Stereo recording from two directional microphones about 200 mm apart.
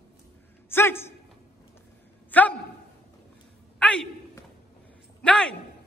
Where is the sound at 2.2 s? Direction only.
10° left (ahead or behind).